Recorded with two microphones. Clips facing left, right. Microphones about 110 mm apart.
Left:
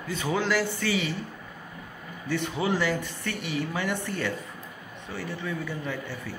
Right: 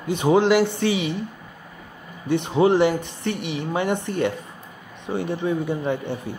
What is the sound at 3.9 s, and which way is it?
Speech, 20° right (ahead or behind).